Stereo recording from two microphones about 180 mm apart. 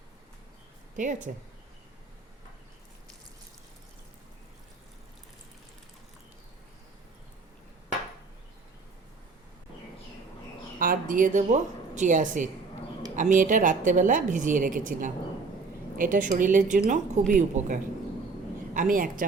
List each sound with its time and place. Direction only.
0.9 s a woman's voice: 45° right (ahead or behind)
10.8 s a woman's voice: 50° right (ahead or behind)